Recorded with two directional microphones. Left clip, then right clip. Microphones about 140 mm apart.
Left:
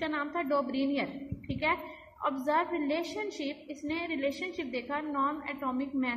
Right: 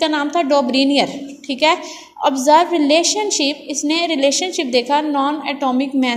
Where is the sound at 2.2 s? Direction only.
30° right (ahead or behind).